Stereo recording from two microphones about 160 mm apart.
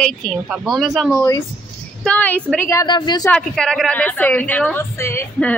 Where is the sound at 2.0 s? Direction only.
10° left (ahead or behind); by 3.2 s 25° left (ahead or behind).